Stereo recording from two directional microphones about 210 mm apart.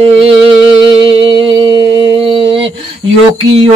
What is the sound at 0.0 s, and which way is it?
Music, 25° right (ahead or behind).